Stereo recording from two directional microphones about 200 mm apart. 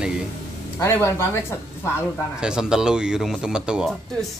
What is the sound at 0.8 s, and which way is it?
Speech, 10° left (ahead or behind).